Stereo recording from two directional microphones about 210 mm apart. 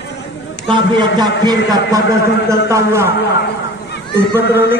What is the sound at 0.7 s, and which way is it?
A man's voice, 20° right (ahead or behind).